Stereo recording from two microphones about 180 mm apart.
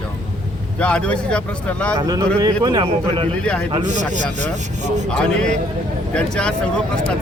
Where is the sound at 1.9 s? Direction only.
20° right (ahead or behind).